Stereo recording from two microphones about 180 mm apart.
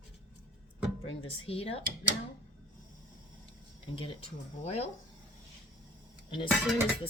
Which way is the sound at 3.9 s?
30° left (ahead or behind).